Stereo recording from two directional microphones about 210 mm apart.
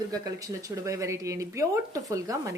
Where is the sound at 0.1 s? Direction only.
15° right (ahead or behind).